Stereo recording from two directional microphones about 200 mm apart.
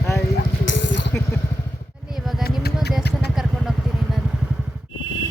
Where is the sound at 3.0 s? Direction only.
55° left (ahead or behind).